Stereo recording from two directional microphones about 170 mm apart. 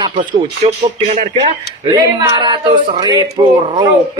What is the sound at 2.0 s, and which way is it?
Speech, 25° right (ahead or behind).